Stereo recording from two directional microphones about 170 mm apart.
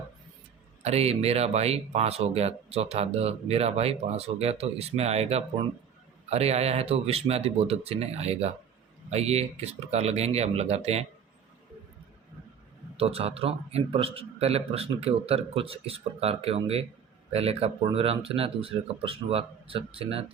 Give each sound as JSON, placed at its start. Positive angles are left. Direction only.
{"t": 0.8, "sound": "speech", "side_deg": -40}
{"t": 13.0, "sound": "speech", "side_deg": -35}